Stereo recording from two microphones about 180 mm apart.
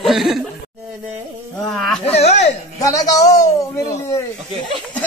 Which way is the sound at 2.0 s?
35° left (ahead or behind).